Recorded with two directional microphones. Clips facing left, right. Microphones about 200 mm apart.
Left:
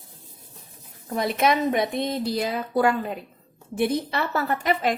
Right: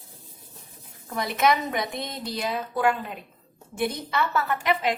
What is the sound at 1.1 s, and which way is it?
A woman's voice, 30° left (ahead or behind).